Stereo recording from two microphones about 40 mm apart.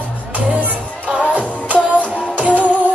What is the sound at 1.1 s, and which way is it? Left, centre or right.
Music, right.